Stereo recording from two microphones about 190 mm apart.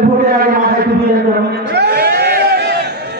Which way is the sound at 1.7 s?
60° right (ahead or behind).